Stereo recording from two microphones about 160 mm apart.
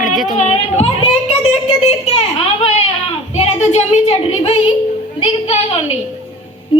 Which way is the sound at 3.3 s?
45° left (ahead or behind).